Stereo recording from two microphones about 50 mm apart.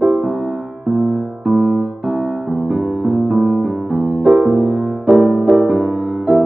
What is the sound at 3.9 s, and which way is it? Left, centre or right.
Music, right.